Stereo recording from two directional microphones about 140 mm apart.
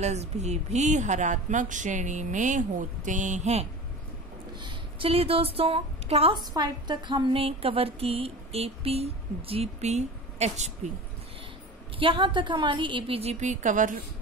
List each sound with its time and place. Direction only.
0.0 s speech: 55° right (ahead or behind)
4.6 s a woman's voice: 35° right (ahead or behind)
6.5 s speech: 30° right (ahead or behind); by 10.7 s 55° right (ahead or behind)
12.0 s a woman's voice: 35° right (ahead or behind); by 13.9 s 65° right (ahead or behind)